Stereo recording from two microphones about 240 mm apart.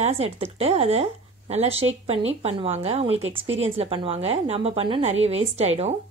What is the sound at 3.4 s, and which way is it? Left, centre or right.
Speech, right.